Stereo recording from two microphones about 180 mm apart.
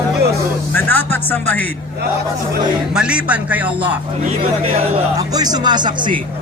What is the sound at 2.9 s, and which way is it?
A man's voice, 5° right (ahead or behind).